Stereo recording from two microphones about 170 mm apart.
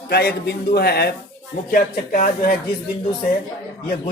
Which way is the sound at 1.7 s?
55° left (ahead or behind).